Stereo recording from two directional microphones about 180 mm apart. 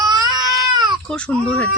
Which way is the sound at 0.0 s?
20° right (ahead or behind).